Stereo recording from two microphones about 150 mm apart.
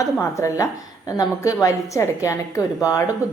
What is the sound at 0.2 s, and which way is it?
A woman's voice, 20° left (ahead or behind).